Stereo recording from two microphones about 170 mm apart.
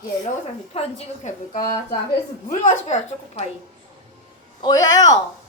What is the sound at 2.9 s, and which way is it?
Speech, 45° left (ahead or behind).